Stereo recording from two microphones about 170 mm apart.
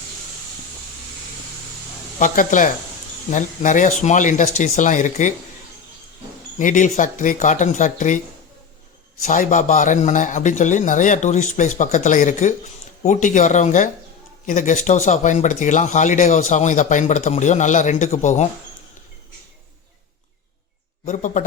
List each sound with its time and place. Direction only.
2.1 s speech: 50° left (ahead or behind)
6.6 s speech: 50° left (ahead or behind)
9.2 s speech: 45° left (ahead or behind)
21.0 s speech: 45° left (ahead or behind)